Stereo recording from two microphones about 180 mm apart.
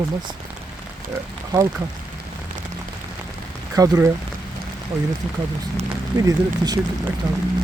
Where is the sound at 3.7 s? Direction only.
20° right (ahead or behind).